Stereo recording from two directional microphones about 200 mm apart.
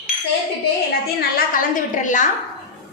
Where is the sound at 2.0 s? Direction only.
40° left (ahead or behind).